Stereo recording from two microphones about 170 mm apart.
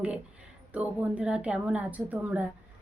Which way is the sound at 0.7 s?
10° right (ahead or behind).